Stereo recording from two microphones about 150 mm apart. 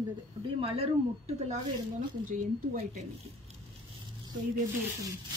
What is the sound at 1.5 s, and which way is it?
A woman's voice, 60° right (ahead or behind).